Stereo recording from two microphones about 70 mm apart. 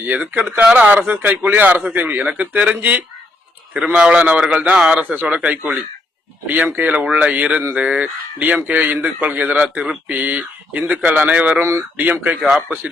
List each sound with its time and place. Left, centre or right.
0.0 s a man's voice: right
5.0 s speech: right
11.6 s speech: right
12.4 s a man's voice: centre